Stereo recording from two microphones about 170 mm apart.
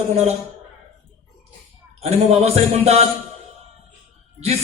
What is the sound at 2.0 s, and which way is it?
Speech, 40° right (ahead or behind).